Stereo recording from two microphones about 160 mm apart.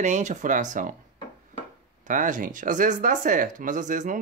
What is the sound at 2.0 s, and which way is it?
Speech, 55° right (ahead or behind).